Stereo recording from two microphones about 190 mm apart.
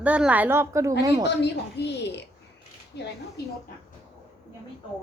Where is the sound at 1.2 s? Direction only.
60° left (ahead or behind).